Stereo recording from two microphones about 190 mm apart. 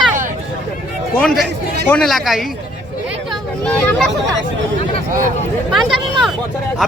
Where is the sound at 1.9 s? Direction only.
Centre (ahead or behind).